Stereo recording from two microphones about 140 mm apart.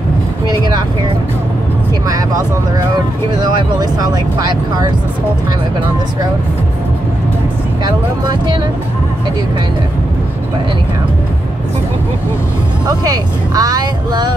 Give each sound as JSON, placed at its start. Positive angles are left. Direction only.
{"t": 0.5, "sound": "vehicle", "side_deg": -30}
{"t": 3.8, "sound": "speech", "side_deg": -30}
{"t": 7.8, "sound": "speech", "side_deg": -30}
{"t": 12.8, "sound": "speech", "side_deg": -25}